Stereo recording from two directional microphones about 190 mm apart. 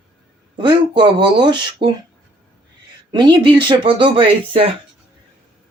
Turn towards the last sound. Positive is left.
turn(degrees=-25)  # may be behind; listen again after turning